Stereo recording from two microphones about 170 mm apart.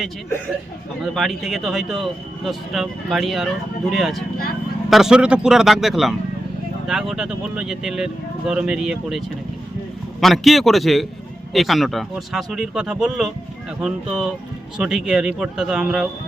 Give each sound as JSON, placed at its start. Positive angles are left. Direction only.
{"t": 1.1, "sound": "speech", "side_deg": 0}